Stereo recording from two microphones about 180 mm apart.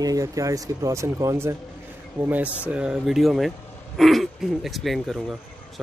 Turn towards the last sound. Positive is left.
turn(degrees=0)  # may be behind; listen again after turning